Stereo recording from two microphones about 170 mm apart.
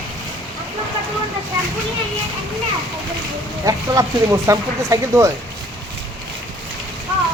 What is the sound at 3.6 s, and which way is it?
Speech, 20° right (ahead or behind).